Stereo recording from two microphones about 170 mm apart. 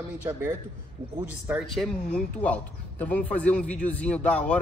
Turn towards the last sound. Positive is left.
turn(degrees=5)  # may be behind; listen again after turning